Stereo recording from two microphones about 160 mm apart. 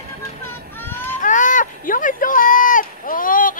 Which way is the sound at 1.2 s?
50° left (ahead or behind).